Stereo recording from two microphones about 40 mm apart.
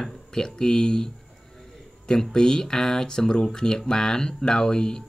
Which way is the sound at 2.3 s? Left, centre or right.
Centre.